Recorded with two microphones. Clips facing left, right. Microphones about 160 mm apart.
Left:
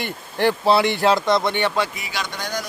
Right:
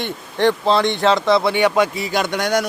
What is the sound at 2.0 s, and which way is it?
Speech, 50° right (ahead or behind).